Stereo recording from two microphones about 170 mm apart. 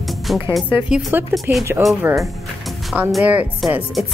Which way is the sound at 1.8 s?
Centre (ahead or behind).